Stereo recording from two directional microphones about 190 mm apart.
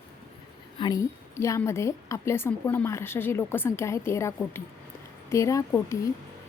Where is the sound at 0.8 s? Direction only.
20° left (ahead or behind).